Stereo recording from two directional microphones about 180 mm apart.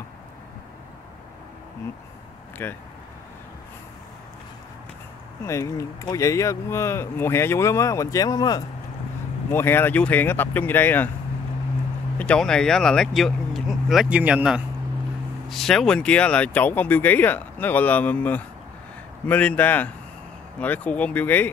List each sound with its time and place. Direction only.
2.6 s speech: 10° left (ahead or behind)
5.4 s speech: 15° left (ahead or behind)
12.2 s speech: 5° left (ahead or behind)